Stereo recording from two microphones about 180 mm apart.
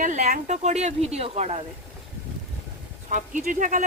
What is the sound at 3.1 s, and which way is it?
Speech, 45° right (ahead or behind).